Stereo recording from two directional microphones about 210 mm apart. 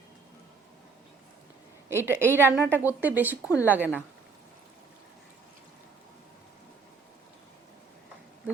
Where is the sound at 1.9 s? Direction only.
10° right (ahead or behind).